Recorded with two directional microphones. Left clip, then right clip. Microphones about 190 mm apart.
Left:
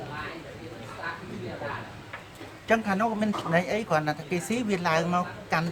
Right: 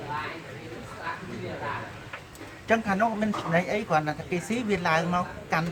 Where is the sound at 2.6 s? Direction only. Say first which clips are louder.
Right 1 dB; 35° left (ahead or behind).